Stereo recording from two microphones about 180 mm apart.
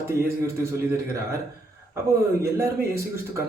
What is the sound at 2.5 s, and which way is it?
Speech, 15° right (ahead or behind).